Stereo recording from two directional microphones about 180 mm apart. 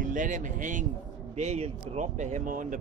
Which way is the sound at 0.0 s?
45° right (ahead or behind).